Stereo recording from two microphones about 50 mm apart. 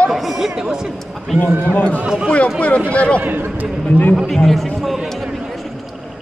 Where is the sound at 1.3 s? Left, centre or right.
Centre.